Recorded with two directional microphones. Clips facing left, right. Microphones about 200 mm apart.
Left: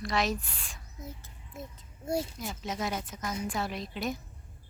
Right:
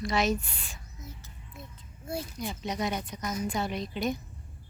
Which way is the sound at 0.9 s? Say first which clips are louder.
Left 5 dB; 55° left (ahead or behind).